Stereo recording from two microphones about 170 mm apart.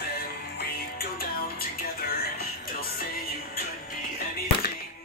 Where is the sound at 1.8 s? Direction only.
60° left (ahead or behind).